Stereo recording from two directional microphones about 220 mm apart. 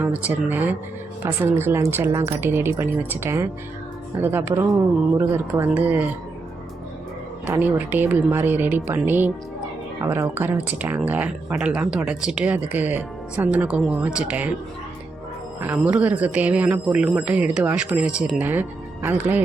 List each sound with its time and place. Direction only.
0.5 s speech: 10° right (ahead or behind)
7.4 s speech: 10° right (ahead or behind)
15.6 s speech: 10° right (ahead or behind)